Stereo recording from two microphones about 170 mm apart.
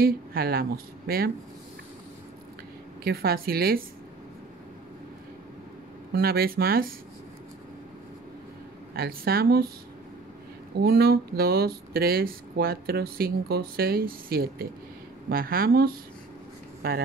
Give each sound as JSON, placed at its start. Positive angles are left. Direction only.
{"t": 0.0, "sound": "speech", "side_deg": -60}
{"t": 3.0, "sound": "speech", "side_deg": -65}
{"t": 6.1, "sound": "speech", "side_deg": -65}
{"t": 8.9, "sound": "speech", "side_deg": -65}
{"t": 10.8, "sound": "speech", "side_deg": -65}